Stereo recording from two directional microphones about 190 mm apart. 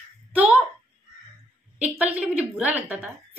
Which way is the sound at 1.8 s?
10° right (ahead or behind).